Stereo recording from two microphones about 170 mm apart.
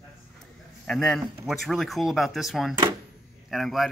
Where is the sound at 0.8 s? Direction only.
5° left (ahead or behind).